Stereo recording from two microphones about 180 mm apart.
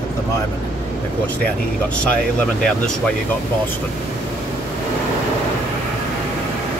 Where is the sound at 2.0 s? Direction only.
5° left (ahead or behind).